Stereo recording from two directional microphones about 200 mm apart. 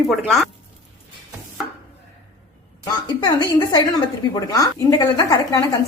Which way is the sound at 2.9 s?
20° left (ahead or behind).